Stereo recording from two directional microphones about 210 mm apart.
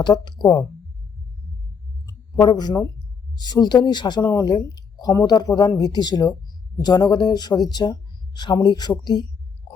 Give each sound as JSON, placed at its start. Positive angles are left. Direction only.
{"t": 0.0, "sound": "speech", "side_deg": 20}
{"t": 2.0, "sound": "speech", "side_deg": 20}